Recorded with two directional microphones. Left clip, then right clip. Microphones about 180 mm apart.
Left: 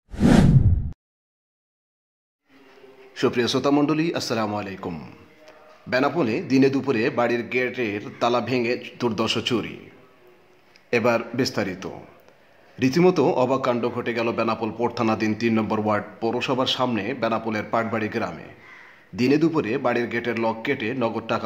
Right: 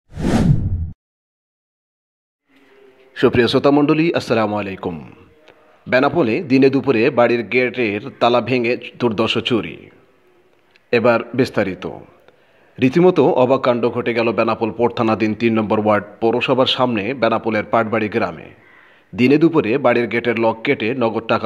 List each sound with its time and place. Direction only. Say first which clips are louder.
3.1 s speech: right 8 dB; 25° right (ahead or behind)
10.9 s a man's voice: right 6 dB; 25° right (ahead or behind)